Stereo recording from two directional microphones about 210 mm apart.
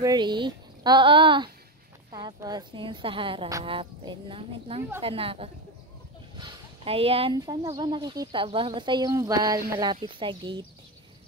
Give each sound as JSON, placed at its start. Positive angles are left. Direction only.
{"t": 0.0, "sound": "speech", "side_deg": -20}